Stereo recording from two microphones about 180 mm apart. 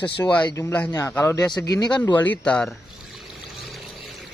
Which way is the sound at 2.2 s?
10° left (ahead or behind).